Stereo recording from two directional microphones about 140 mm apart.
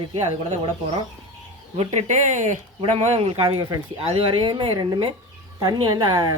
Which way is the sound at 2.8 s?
45° right (ahead or behind).